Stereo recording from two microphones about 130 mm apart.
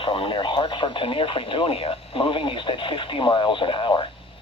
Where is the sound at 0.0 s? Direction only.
40° left (ahead or behind).